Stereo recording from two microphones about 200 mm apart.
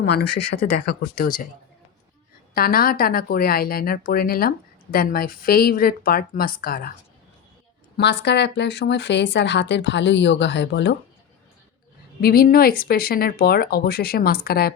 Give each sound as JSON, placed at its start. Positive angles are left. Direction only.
{"t": 0.0, "sound": "a woman's voice", "side_deg": 50}
{"t": 2.6, "sound": "a woman's voice", "side_deg": 45}
{"t": 7.9, "sound": "a woman's voice", "side_deg": 55}
{"t": 12.2, "sound": "a woman's voice", "side_deg": 50}